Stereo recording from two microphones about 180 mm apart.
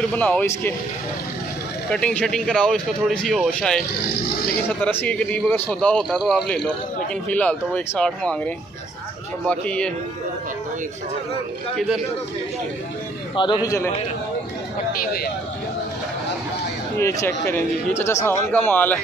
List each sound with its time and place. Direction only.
0.1 s a man's voice: 10° left (ahead or behind)
1.9 s a man's voice: 5° left (ahead or behind)
9.5 s a man's voice: 5° left (ahead or behind)
11.7 s a man's voice: centre (ahead or behind)
13.7 s a man's voice: 15° left (ahead or behind)
14.9 s speech: 55° left (ahead or behind)
17.0 s a man's voice: 15° left (ahead or behind)